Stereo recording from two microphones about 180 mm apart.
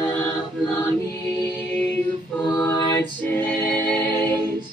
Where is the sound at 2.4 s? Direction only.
20° left (ahead or behind).